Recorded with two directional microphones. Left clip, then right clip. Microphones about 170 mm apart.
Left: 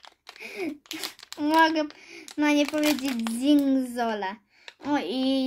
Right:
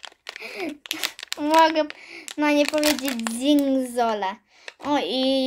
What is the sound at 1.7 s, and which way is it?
Speech, 40° right (ahead or behind).